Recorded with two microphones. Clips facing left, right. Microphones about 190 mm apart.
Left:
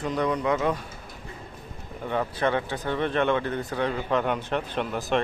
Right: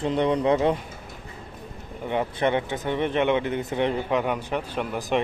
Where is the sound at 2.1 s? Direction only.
20° right (ahead or behind).